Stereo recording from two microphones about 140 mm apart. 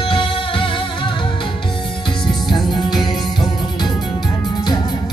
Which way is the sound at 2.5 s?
30° left (ahead or behind).